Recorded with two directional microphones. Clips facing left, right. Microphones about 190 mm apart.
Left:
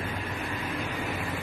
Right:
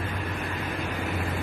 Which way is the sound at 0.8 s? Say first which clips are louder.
Right 2 dB; 55° right (ahead or behind).